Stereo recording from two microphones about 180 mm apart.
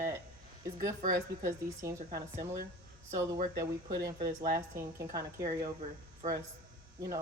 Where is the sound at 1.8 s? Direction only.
15° right (ahead or behind).